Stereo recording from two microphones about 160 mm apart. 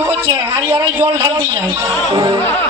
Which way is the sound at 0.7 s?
15° right (ahead or behind).